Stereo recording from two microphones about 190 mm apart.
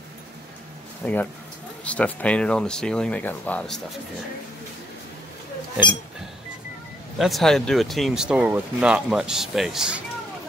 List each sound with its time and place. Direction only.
1.0 s speech: 10° left (ahead or behind)
7.2 s speech: centre (ahead or behind)